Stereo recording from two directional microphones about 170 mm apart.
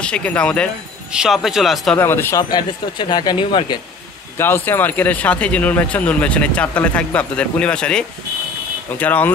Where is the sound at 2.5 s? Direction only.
25° left (ahead or behind).